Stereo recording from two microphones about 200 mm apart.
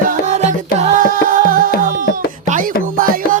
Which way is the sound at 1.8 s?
40° right (ahead or behind).